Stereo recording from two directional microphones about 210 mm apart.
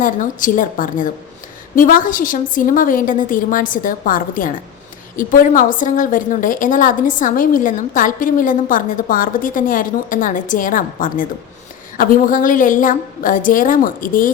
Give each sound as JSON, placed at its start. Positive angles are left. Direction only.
{"t": 0.0, "sound": "a woman's voice", "side_deg": 40}